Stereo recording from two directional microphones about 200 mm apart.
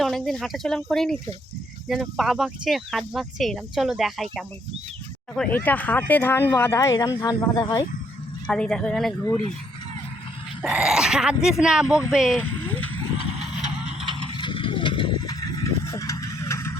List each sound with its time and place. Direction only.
0.0 s speech: centre (ahead or behind); by 7.9 s 20° left (ahead or behind)
8.4 s speech: 5° left (ahead or behind)
10.6 s speech: 5° right (ahead or behind)
12.4 s a sound: 10° left (ahead or behind)
13.4 s vehicle: 5° right (ahead or behind)
14.3 s a sound: 25° left (ahead or behind)